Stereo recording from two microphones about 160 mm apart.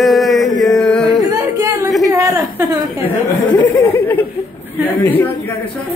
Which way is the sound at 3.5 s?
10° left (ahead or behind).